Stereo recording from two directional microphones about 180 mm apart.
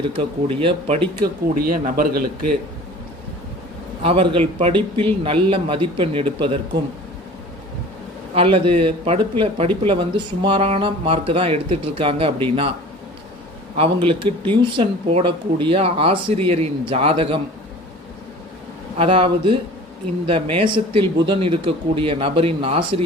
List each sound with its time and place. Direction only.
0.2 s speech: 30° right (ahead or behind)
1.7 s a man's voice: 55° right (ahead or behind)
4.0 s speech: 30° right (ahead or behind)
8.4 s speech: 30° right (ahead or behind)
13.7 s speech: 30° right (ahead or behind)
18.9 s speech: 30° right (ahead or behind)